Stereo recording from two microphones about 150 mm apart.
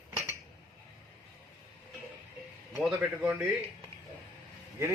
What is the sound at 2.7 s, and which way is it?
Speech, centre (ahead or behind).